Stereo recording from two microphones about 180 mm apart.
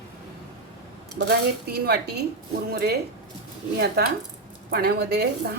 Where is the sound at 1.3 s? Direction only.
60° right (ahead or behind).